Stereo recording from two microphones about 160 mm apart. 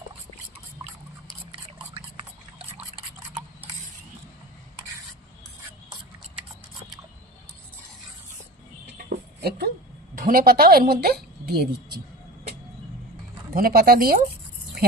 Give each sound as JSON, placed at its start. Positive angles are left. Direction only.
{"t": 9.0, "sound": "a sound", "side_deg": -80}
{"t": 10.2, "sound": "speech", "side_deg": -65}
{"t": 13.5, "sound": "speech", "side_deg": -65}